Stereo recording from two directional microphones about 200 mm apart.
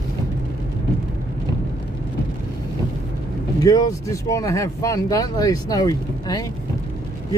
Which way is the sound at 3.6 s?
20° left (ahead or behind).